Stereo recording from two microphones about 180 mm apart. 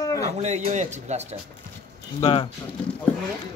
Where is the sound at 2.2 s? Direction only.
30° left (ahead or behind).